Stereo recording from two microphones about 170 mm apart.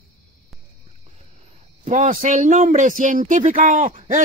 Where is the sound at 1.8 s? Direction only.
50° right (ahead or behind).